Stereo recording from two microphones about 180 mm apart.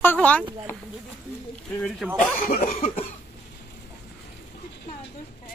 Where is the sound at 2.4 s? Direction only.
50° left (ahead or behind).